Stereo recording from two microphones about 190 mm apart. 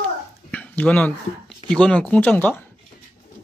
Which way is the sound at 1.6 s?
5° left (ahead or behind).